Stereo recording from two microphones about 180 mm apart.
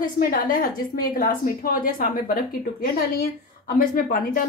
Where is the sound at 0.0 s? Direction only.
50° left (ahead or behind).